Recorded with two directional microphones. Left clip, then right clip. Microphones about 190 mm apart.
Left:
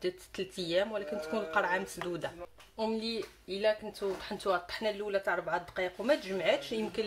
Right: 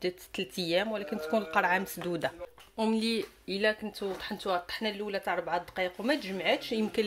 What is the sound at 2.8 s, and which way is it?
A woman's voice, 45° right (ahead or behind).